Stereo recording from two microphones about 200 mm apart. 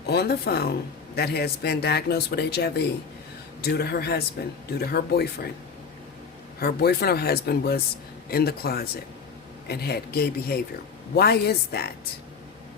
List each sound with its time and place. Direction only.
0.0 s speech: 55° left (ahead or behind)
6.6 s speech: 50° left (ahead or behind)